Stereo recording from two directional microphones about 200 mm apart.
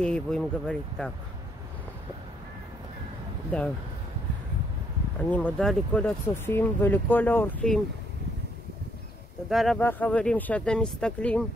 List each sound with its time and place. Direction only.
0.0 s speech: 5° left (ahead or behind)
5.3 s speech: 5° left (ahead or behind)
9.5 s speech: centre (ahead or behind)